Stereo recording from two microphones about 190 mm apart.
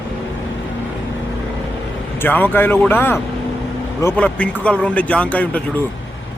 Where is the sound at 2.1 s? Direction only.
10° left (ahead or behind).